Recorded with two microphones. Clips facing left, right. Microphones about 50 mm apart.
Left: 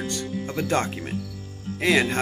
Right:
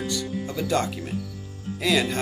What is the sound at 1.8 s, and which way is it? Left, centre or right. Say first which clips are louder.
Speech: left 2 dB; left.